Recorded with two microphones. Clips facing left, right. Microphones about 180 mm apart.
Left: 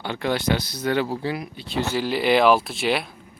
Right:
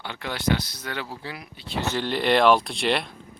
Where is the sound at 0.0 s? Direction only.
40° left (ahead or behind).